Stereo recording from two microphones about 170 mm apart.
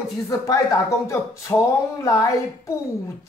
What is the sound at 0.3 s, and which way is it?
A woman's voice, 20° left (ahead or behind).